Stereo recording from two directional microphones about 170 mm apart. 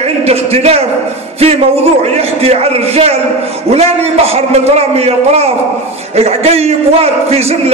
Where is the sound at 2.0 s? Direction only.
35° right (ahead or behind).